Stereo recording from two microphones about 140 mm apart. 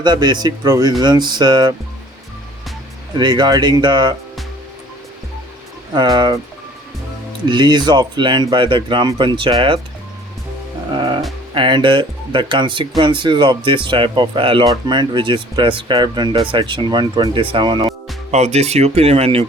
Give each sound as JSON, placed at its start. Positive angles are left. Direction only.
{"t": 0.0, "sound": "speech", "side_deg": -30}
{"t": 3.2, "sound": "speech", "side_deg": -30}
{"t": 5.9, "sound": "speech", "side_deg": -30}
{"t": 7.4, "sound": "speech", "side_deg": -35}
{"t": 10.9, "sound": "music", "side_deg": -35}
{"t": 11.5, "sound": "speech", "side_deg": -35}
{"t": 18.3, "sound": "speech", "side_deg": -50}